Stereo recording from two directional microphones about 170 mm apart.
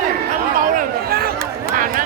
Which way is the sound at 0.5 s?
60° right (ahead or behind).